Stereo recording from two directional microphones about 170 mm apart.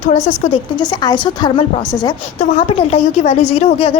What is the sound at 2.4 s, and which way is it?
A woman's voice, 35° left (ahead or behind).